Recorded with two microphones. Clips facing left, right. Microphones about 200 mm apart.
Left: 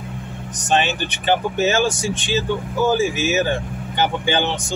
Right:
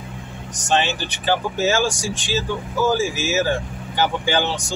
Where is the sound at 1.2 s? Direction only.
20° left (ahead or behind).